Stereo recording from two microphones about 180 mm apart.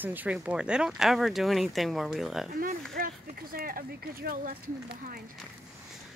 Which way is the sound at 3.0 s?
55° right (ahead or behind).